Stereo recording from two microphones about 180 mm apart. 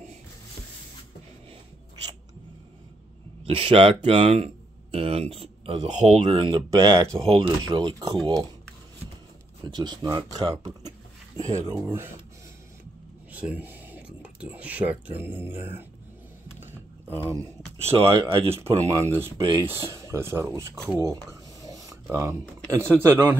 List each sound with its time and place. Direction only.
3.4 s speech: 30° right (ahead or behind)
9.7 s speech: 25° right (ahead or behind)
13.3 s speech: 10° right (ahead or behind)
17.2 s speech: 15° right (ahead or behind)
17.7 s speech: 35° right (ahead or behind)
18.5 s speech: 15° right (ahead or behind)
20.7 s speech: 5° left (ahead or behind)
21.0 s speech: 20° right (ahead or behind)